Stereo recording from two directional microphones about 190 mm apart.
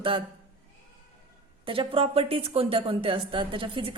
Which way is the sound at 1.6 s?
30° right (ahead or behind).